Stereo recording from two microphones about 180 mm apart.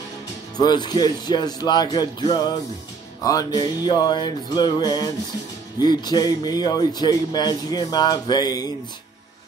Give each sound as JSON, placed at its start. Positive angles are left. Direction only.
{"t": 0.6, "sound": "a man's voice", "side_deg": 25}
{"t": 3.3, "sound": "a man's voice", "side_deg": 20}